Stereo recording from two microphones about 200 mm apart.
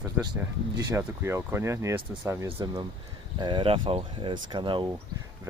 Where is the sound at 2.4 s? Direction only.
25° right (ahead or behind).